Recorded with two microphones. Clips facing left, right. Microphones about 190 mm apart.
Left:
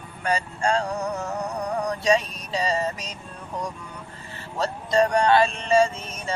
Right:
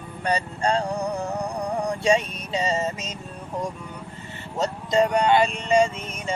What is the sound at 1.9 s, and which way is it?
Music, 25° right (ahead or behind).